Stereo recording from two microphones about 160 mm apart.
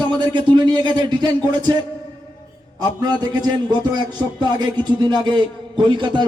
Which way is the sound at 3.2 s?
25° right (ahead or behind).